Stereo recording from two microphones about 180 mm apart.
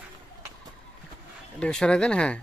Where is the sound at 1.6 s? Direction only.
5° left (ahead or behind).